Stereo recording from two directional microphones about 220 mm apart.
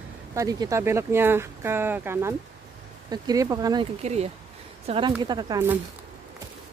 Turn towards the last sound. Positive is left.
turn(degrees=-15)  # may be behind; listen again after turning